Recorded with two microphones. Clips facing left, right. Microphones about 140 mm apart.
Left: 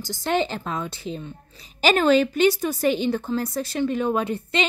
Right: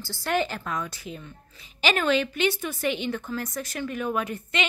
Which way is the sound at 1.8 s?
40° left (ahead or behind).